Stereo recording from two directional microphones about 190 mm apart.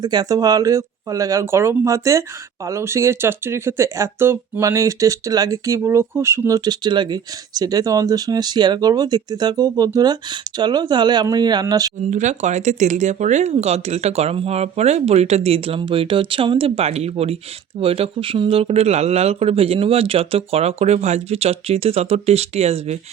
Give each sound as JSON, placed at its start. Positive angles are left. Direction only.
{"t": 0.0, "sound": "speech", "side_deg": -20}
{"t": 12.1, "sound": "speech", "side_deg": -40}